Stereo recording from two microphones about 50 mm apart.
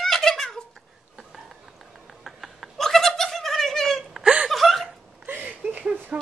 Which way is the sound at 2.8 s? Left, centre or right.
Centre.